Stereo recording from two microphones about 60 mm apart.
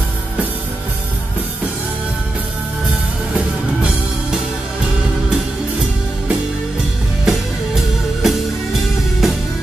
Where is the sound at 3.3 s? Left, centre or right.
Centre.